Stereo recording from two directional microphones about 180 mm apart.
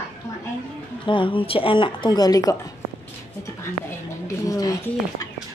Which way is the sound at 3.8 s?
20° left (ahead or behind).